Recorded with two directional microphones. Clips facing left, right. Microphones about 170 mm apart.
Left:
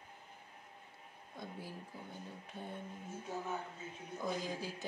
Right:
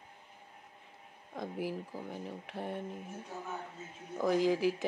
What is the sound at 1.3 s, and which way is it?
Speech, 90° right.